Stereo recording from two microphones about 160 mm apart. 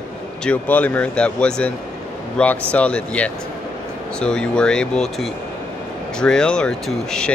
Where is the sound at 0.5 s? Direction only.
10° left (ahead or behind).